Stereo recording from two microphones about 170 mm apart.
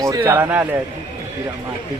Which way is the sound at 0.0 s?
20° right (ahead or behind).